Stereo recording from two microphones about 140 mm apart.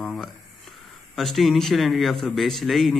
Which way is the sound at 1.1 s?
Centre (ahead or behind).